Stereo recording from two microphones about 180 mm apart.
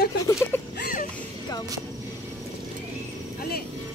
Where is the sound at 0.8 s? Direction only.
50° left (ahead or behind).